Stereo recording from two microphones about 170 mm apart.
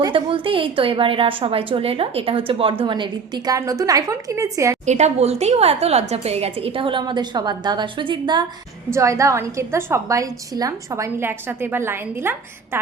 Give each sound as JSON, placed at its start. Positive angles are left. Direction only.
{"t": 0.0, "sound": "a woman's voice", "side_deg": -30}
{"t": 4.9, "sound": "a woman's voice", "side_deg": -40}